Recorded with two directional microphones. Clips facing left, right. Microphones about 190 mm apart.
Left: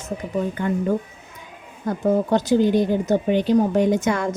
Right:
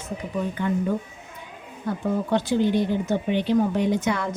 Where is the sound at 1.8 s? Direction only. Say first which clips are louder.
Left 5 dB; 40° left (ahead or behind).